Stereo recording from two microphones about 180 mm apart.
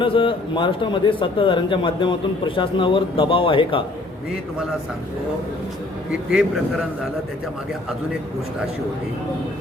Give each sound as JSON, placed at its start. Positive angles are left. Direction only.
{"t": 0.0, "sound": "a man's voice", "side_deg": 30}
{"t": 6.1, "sound": "a man's voice", "side_deg": 0}